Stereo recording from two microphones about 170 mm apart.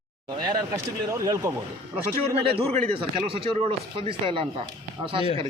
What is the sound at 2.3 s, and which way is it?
A man's voice, 35° right (ahead or behind).